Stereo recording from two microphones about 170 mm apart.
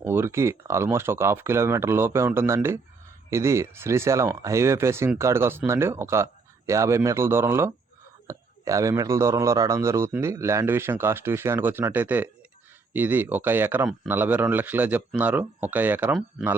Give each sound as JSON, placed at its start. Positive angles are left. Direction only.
{"t": 0.0, "sound": "speech", "side_deg": -15}